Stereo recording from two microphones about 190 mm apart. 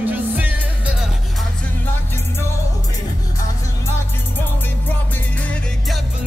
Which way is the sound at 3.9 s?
10° left (ahead or behind).